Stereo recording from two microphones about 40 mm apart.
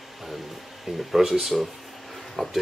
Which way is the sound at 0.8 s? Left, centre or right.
Centre.